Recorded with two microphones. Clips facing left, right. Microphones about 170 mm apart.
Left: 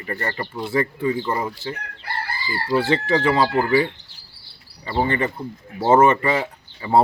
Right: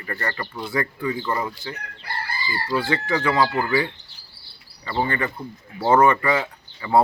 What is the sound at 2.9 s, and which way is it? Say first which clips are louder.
Speech: left 3 dB; 30° left (ahead or behind).